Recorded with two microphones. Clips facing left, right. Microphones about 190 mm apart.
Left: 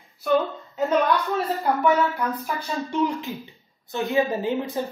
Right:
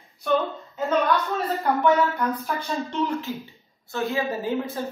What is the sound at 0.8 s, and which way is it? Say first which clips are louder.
A woman's voice: left 1 dB; 10° left (ahead or behind).